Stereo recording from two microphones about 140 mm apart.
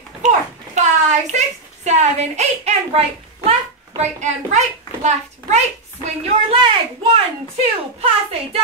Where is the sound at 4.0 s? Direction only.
55° right (ahead or behind).